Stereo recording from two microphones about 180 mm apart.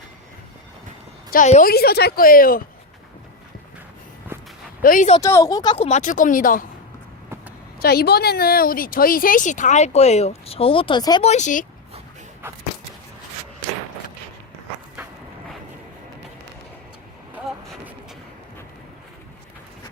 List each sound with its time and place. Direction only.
1.3 s speech: 45° left (ahead or behind)
1.7 s a woman's voice: 60° left (ahead or behind)
4.3 s walk: 15° right (ahead or behind)
4.8 s speech: 50° left (ahead or behind)
5.2 s speech: 15° left (ahead or behind); by 6.7 s 50° left (ahead or behind)
7.8 s speech: 60° left (ahead or behind); by 11.2 s 25° left (ahead or behind)
11.2 s speech: 40° left (ahead or behind)